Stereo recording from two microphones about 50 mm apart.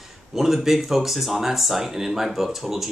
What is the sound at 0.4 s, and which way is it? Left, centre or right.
Speech, centre.